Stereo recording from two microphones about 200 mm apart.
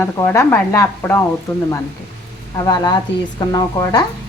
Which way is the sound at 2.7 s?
20° left (ahead or behind).